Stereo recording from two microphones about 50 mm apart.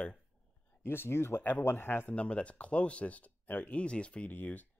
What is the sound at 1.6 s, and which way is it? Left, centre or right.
Speech, left.